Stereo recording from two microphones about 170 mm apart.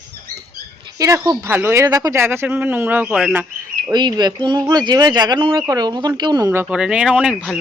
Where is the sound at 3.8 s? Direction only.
25° right (ahead or behind).